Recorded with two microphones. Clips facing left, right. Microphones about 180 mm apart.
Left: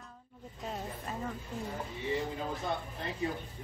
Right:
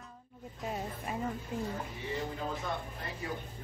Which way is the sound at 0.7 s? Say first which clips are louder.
Right 2 dB; 5° right (ahead or behind).